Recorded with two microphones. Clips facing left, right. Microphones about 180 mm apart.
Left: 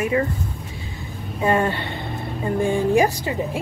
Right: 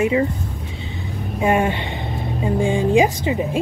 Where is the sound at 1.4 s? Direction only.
15° right (ahead or behind).